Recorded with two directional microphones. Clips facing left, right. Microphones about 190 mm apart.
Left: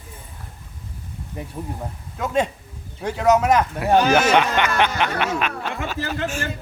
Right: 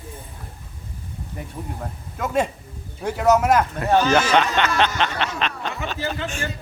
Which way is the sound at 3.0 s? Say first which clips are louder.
Even; 10° right (ahead or behind).